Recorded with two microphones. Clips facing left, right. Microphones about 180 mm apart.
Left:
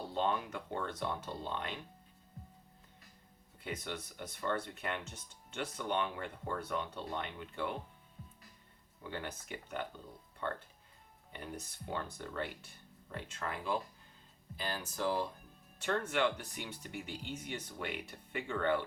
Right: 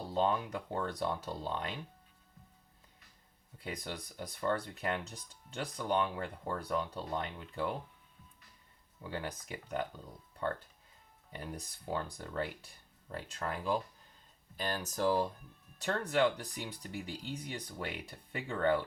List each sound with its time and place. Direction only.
0.1 s speech: 40° right (ahead or behind)
3.6 s speech: 35° right (ahead or behind)
9.1 s speech: 35° right (ahead or behind)
11.3 s speech: 35° right (ahead or behind)